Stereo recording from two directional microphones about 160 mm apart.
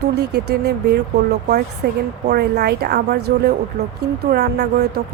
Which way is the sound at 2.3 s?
85° right.